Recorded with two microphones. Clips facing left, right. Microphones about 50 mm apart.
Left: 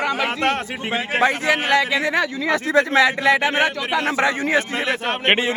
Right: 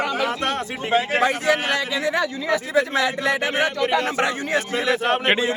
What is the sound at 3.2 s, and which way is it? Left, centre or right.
Speech, left.